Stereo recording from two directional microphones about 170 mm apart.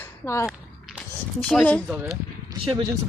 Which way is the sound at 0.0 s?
15° left (ahead or behind).